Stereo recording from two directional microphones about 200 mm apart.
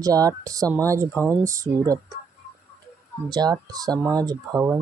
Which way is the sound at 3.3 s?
20° right (ahead or behind).